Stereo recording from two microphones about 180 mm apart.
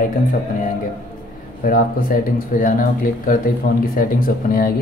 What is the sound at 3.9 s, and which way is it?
Speech, 50° left (ahead or behind).